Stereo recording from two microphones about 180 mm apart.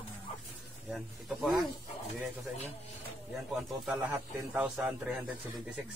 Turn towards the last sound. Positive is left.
turn(degrees=-10)  # may be behind; listen again after turning